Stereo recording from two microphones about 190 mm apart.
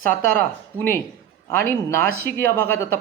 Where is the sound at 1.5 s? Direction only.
10° left (ahead or behind).